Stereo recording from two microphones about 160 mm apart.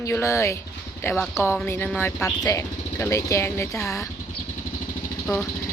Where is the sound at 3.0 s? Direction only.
20° left (ahead or behind).